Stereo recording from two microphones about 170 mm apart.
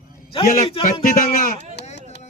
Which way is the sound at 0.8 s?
50° left (ahead or behind).